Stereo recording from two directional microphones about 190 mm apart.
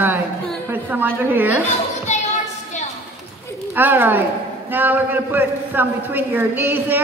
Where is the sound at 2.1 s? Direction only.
35° left (ahead or behind).